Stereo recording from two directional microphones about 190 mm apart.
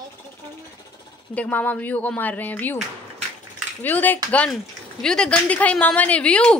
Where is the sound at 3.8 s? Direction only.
10° left (ahead or behind).